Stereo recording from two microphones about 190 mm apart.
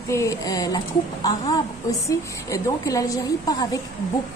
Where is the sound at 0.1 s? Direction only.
15° left (ahead or behind).